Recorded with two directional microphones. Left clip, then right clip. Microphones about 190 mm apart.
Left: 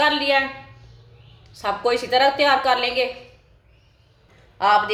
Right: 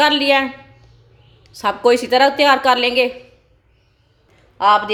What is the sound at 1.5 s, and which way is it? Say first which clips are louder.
A woman's voice: right 7 dB; 55° right (ahead or behind).